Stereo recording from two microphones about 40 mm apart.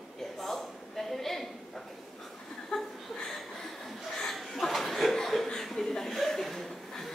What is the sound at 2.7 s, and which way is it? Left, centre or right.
Chuckle, centre.